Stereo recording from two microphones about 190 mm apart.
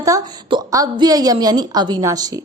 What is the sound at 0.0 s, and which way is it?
Speech, 20° right (ahead or behind).